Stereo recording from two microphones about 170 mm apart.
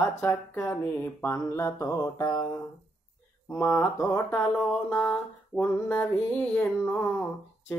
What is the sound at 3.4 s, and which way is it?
Mantra, 15° left (ahead or behind).